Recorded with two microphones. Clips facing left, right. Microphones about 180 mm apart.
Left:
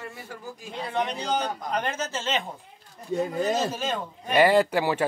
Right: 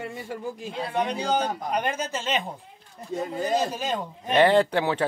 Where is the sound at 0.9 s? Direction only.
10° right (ahead or behind).